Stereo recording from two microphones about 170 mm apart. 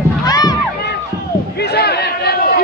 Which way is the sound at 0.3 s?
25° left (ahead or behind).